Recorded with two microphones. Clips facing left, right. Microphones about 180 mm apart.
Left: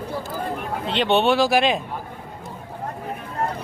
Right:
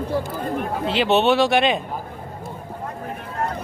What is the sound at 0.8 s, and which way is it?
Speech, centre (ahead or behind).